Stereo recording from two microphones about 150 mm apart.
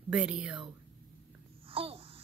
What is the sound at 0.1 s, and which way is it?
Speech, 5° right (ahead or behind).